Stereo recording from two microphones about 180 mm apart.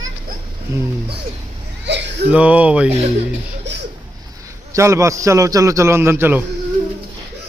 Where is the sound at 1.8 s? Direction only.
75° right (ahead or behind).